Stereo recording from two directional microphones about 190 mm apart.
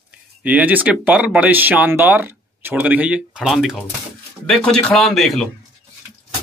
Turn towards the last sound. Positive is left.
turn(degrees=0)  # may be behind; listen again after turning